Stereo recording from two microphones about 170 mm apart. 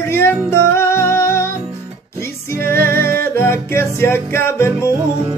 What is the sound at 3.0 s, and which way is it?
Music, 60° right (ahead or behind).